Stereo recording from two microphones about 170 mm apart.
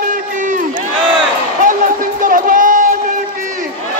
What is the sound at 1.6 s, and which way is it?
Crowd, 50° right (ahead or behind).